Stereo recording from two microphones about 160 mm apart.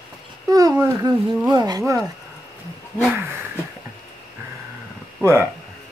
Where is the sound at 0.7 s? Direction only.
20° right (ahead or behind).